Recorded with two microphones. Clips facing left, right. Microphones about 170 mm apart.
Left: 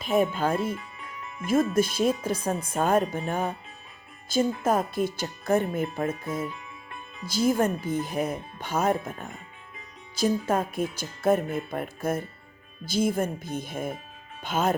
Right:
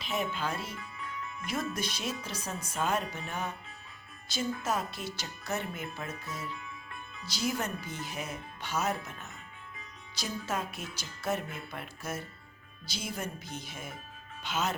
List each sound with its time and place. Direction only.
0.0 s speech: 50° left (ahead or behind)